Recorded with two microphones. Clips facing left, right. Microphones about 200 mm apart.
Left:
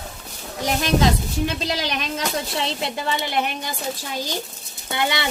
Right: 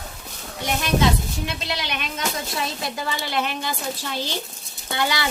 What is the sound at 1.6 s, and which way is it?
A woman's voice, 40° left (ahead or behind).